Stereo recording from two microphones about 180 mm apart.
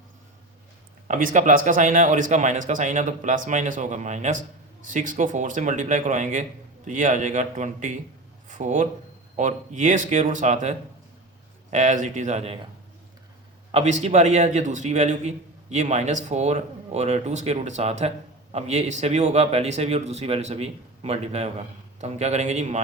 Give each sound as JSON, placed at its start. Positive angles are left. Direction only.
{"t": 1.0, "sound": "a man's voice", "side_deg": -45}
{"t": 13.7, "sound": "a man's voice", "side_deg": -35}